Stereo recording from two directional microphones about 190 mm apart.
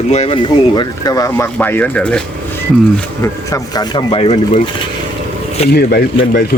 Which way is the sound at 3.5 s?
20° left (ahead or behind).